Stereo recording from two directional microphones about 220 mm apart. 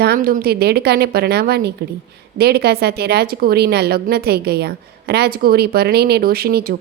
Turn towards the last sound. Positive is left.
turn(degrees=-45)  # may be behind; listen again after turning